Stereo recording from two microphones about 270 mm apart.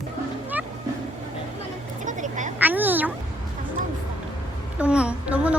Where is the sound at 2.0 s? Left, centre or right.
Right.